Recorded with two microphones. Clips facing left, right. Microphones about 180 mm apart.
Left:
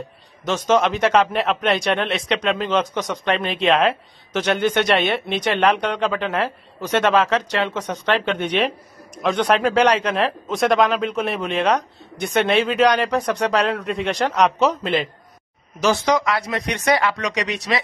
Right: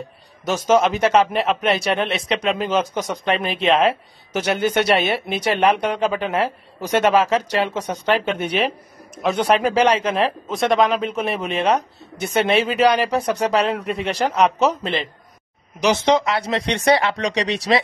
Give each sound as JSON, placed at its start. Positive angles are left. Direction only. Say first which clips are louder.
{"t": 0.5, "sound": "speech", "louder": "right 1 dB", "side_deg": -5}
{"t": 15.8, "sound": "speech", "louder": "right 1 dB", "side_deg": -20}